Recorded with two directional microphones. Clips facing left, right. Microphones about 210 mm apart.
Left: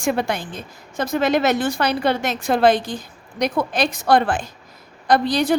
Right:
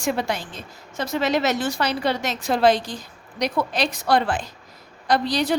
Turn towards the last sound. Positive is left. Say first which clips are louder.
# left 4 dB
turn(degrees=50)  # may be behind; listen again after turning